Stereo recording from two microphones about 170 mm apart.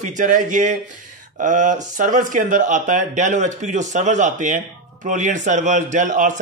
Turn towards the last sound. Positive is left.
turn(degrees=-45)  # may be behind; listen again after turning